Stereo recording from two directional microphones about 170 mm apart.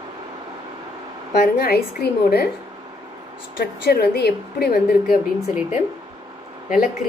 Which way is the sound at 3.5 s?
70° left (ahead or behind).